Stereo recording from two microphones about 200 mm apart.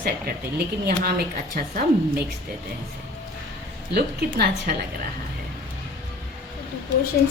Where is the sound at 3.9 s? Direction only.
55° right (ahead or behind).